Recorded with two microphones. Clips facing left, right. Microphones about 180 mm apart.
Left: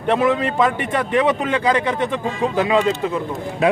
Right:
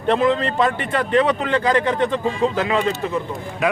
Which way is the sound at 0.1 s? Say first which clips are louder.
Even; 10° left (ahead or behind).